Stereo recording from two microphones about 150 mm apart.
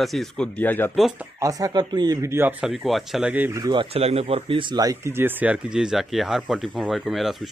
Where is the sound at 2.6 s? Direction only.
Centre (ahead or behind).